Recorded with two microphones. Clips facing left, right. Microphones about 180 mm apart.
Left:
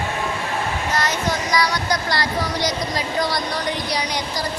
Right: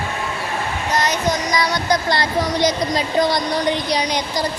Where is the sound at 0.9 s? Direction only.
20° right (ahead or behind).